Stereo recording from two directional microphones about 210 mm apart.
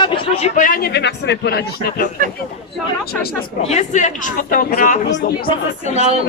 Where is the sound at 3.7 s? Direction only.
35° left (ahead or behind).